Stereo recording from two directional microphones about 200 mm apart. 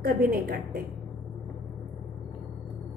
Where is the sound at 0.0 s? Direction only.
45° right (ahead or behind).